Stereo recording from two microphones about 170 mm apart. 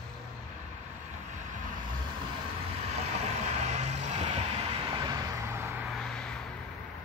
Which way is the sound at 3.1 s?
40° right (ahead or behind).